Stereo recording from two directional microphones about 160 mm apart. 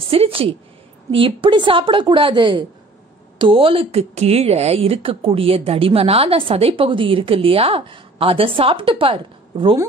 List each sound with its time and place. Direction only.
0.1 s a woman's voice: 35° right (ahead or behind)